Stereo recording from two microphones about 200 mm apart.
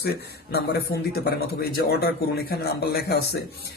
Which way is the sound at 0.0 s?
55° left (ahead or behind).